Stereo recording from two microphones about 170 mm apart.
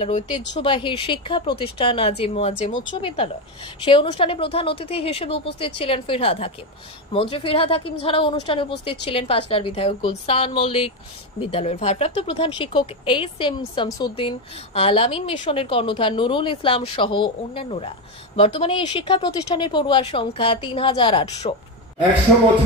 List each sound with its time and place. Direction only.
0.5 s speech: 30° left (ahead or behind)